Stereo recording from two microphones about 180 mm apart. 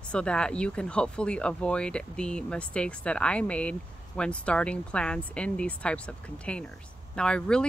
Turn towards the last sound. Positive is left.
turn(degrees=5)  # may be behind; listen again after turning